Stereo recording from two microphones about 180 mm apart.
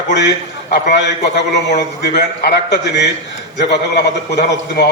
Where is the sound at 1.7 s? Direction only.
70° left (ahead or behind).